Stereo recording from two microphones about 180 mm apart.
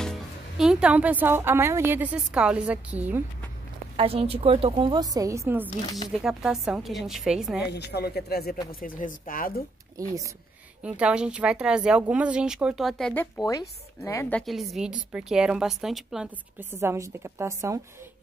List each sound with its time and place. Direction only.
0.0 s speech: centre (ahead or behind)
3.9 s a woman's voice: 30° right (ahead or behind); by 5.7 s 15° right (ahead or behind)
6.0 s speech: 5° right (ahead or behind)
7.6 s speech: 65° left (ahead or behind)
8.8 s speech: 50° left (ahead or behind)
10.0 s speech: 20° right (ahead or behind)
10.8 s speech: 5° right (ahead or behind); by 14.2 s 20° left (ahead or behind)
14.3 s speech: centre (ahead or behind)
16.7 s a woman's voice: 15° right (ahead or behind)